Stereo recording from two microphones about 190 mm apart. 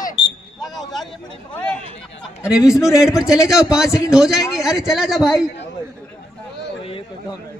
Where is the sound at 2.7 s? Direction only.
Centre (ahead or behind).